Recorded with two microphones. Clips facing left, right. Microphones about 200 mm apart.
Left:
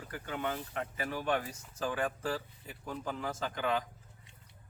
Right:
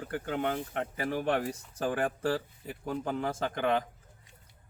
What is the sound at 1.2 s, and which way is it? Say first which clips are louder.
Speech: right 3 dB; 30° right (ahead or behind).